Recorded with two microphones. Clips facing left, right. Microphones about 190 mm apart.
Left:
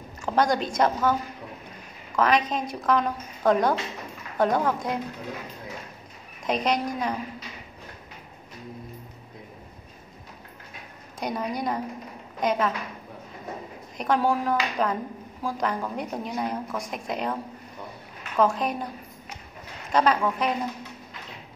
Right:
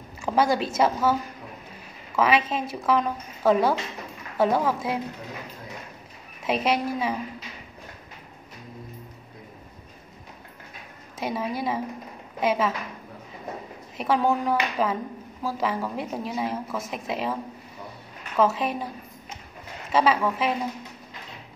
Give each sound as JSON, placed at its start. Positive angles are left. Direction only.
{"t": 0.2, "sound": "a woman's voice", "side_deg": -5}
{"t": 2.1, "sound": "a woman's voice", "side_deg": -5}
{"t": 6.4, "sound": "a woman's voice", "side_deg": -5}
{"t": 11.1, "sound": "a woman's voice", "side_deg": -5}
{"t": 13.9, "sound": "a woman's voice", "side_deg": -5}
{"t": 19.9, "sound": "a woman's voice", "side_deg": -5}